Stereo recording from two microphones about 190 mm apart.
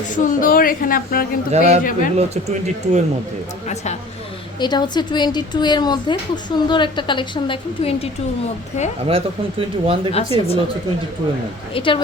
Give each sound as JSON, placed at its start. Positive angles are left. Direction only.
{"t": 0.1, "sound": "speech", "side_deg": 45}
{"t": 1.5, "sound": "speech", "side_deg": -35}
{"t": 1.8, "sound": "speech", "side_deg": 45}
{"t": 2.1, "sound": "speech", "side_deg": -35}
{"t": 4.6, "sound": "a woman's voice", "side_deg": 25}
{"t": 9.0, "sound": "speech", "side_deg": -30}
{"t": 10.3, "sound": "a woman's voice", "side_deg": 30}
{"t": 11.7, "sound": "a woman's voice", "side_deg": 25}